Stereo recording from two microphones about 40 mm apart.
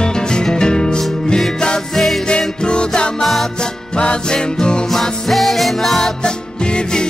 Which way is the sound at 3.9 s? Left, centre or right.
Left.